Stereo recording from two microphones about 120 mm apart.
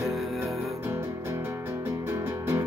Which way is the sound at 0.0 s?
Centre (ahead or behind).